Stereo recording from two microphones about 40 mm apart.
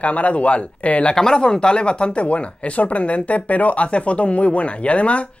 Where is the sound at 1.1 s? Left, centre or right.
Centre.